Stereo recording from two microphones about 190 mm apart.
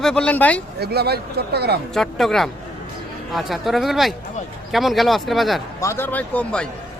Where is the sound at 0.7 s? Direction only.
55° right (ahead or behind).